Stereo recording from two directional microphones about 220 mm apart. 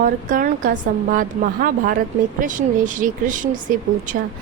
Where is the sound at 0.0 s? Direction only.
40° right (ahead or behind).